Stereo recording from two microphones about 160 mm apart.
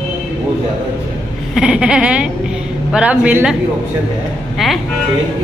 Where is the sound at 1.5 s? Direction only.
5° right (ahead or behind).